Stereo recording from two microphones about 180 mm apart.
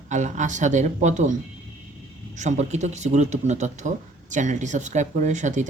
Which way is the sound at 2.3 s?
40° right (ahead or behind).